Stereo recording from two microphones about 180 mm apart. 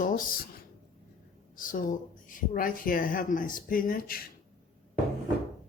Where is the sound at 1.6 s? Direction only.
50° left (ahead or behind).